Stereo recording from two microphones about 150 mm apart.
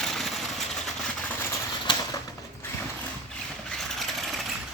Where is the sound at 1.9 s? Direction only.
30° left (ahead or behind).